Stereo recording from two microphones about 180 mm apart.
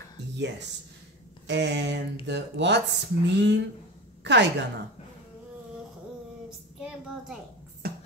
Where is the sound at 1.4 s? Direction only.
75° right (ahead or behind).